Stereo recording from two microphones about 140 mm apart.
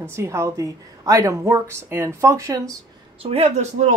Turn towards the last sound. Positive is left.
turn(degrees=-55)  # may be behind; listen again after turning